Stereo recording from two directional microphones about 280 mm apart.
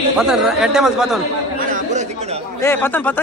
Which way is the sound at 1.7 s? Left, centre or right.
Right.